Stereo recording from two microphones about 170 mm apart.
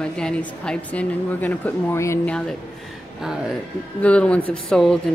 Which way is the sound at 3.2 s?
5° right (ahead or behind).